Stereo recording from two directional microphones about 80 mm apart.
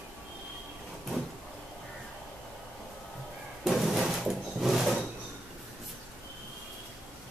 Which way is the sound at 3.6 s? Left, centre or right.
Centre.